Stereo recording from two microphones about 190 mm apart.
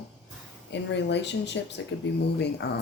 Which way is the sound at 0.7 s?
65° left (ahead or behind).